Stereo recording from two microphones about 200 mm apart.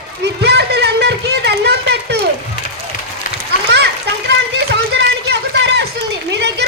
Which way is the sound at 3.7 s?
60° right (ahead or behind).